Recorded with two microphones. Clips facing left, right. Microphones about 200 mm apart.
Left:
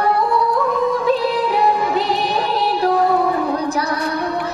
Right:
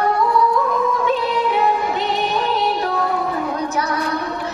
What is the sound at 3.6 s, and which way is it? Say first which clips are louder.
Child singing: left 2 dB; 35° left (ahead or behind).